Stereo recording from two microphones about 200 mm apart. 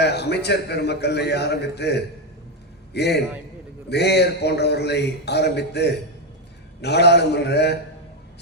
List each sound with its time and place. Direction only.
0.0 s a man's voice: 55° left (ahead or behind)